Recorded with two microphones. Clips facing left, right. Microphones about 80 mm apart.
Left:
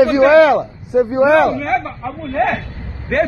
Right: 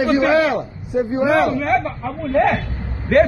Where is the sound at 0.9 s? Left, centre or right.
Left.